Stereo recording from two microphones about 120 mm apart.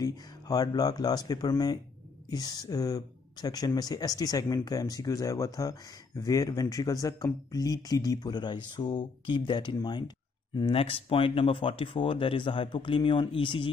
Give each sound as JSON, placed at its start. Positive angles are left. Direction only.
{"t": 0.0, "sound": "speech", "side_deg": 30}